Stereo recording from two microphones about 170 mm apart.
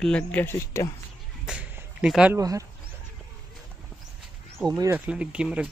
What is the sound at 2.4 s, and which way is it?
Speech, 20° right (ahead or behind).